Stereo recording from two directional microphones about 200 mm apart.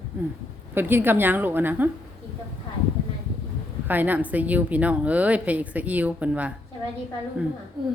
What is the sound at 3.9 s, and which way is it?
A woman's voice, 10° right (ahead or behind).